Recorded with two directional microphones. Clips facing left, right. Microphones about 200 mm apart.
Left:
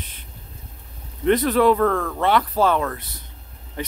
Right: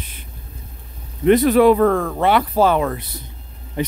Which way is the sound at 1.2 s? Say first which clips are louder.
Right 5 dB; 10° right (ahead or behind).